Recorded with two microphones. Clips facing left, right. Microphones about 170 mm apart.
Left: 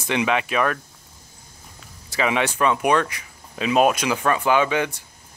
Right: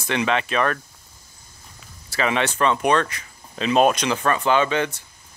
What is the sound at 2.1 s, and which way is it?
Speech, 15° left (ahead or behind).